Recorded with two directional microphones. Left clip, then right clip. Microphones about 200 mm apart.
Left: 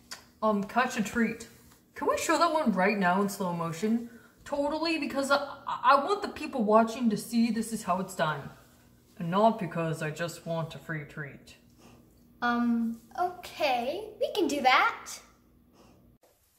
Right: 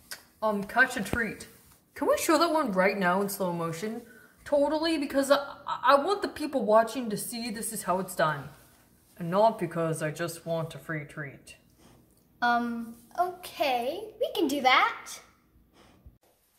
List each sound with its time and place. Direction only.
0.4 s a woman's voice: 45° right (ahead or behind)
2.0 s a woman's voice: 45° right (ahead or behind)
12.4 s a child's voice: 50° right (ahead or behind); by 15.1 s 30° right (ahead or behind)